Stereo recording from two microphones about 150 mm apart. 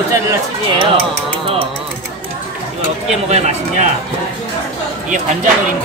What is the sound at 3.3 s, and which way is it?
Speech, 45° right (ahead or behind).